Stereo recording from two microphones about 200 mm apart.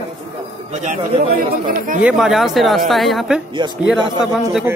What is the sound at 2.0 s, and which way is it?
A man's voice, centre (ahead or behind).